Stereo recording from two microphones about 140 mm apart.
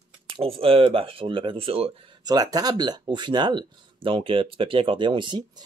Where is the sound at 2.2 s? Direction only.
30° right (ahead or behind).